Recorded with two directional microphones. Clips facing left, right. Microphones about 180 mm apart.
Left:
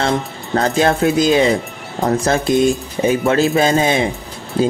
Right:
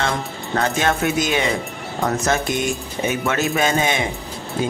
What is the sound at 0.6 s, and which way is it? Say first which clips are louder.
Speech: left 5 dB; 35° left (ahead or behind).